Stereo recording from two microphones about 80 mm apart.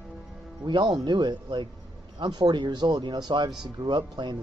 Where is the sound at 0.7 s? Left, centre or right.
Right.